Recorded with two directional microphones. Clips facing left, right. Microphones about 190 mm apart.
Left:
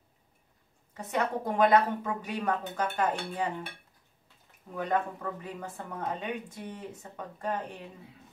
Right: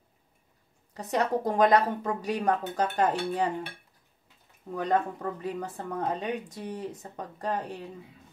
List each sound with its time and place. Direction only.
0.9 s speech: 40° right (ahead or behind)
4.7 s speech: 35° right (ahead or behind)